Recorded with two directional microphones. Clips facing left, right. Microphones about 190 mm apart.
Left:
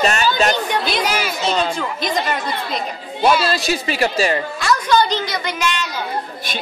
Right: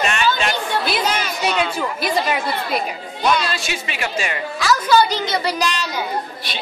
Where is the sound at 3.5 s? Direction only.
40° left (ahead or behind).